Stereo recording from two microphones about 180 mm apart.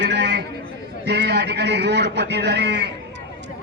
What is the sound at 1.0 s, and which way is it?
A man's voice, 70° right (ahead or behind).